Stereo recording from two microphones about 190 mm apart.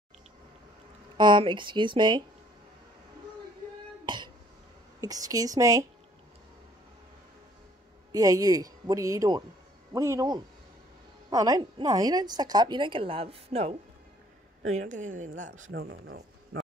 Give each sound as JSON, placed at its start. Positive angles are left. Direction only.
{"t": 1.1, "sound": "a woman's voice", "side_deg": -25}
{"t": 4.0, "sound": "throat clearing", "side_deg": -25}
{"t": 5.0, "sound": "a woman's voice", "side_deg": -20}
{"t": 8.1, "sound": "a woman's voice", "side_deg": -20}
{"t": 15.7, "sound": "speech", "side_deg": -70}